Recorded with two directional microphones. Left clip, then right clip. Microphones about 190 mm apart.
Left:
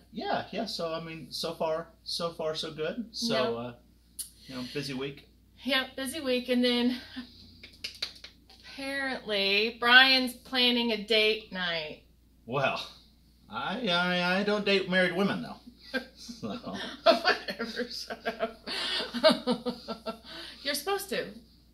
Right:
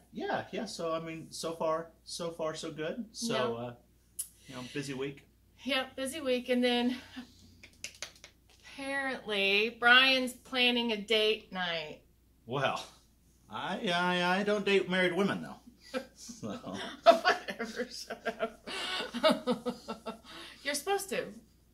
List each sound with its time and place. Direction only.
0.1 s speech: 20° right (ahead or behind)
5.6 s speech: 5° left (ahead or behind)
8.6 s speech: 5° left (ahead or behind)
12.4 s speech: 20° right (ahead or behind)
16.7 s speech: 5° left (ahead or behind)